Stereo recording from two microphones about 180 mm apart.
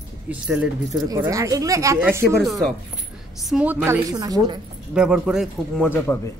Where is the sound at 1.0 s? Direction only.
15° right (ahead or behind).